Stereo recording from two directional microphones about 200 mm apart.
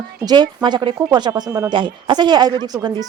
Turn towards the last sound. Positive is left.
turn(degrees=-20)  # may be behind; listen again after turning